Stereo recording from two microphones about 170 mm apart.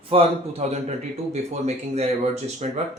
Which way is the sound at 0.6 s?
40° right (ahead or behind).